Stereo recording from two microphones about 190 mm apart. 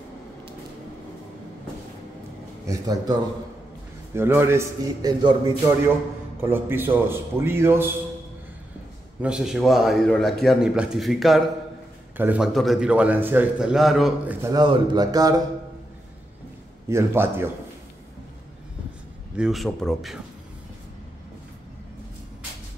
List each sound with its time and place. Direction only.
2.6 s a man's voice: 20° right (ahead or behind)
9.2 s a man's voice: 5° right (ahead or behind)
14.5 s speech: 25° right (ahead or behind)
16.9 s a man's voice: 15° right (ahead or behind)
19.3 s a man's voice: centre (ahead or behind)